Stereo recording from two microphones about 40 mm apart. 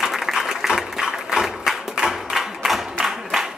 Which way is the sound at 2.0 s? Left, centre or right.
Centre.